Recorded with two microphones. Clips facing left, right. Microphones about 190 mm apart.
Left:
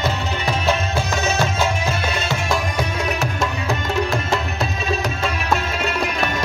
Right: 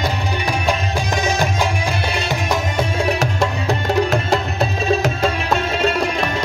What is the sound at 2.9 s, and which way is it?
Music, 30° right (ahead or behind).